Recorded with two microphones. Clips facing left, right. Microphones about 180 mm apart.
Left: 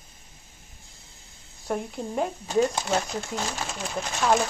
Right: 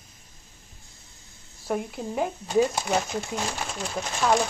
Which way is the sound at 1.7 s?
5° right (ahead or behind).